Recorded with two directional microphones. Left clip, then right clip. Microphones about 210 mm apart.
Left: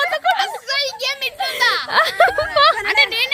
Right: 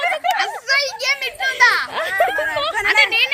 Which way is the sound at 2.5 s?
35° left (ahead or behind).